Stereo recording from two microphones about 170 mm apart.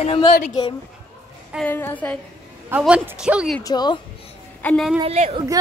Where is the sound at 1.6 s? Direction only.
10° left (ahead or behind).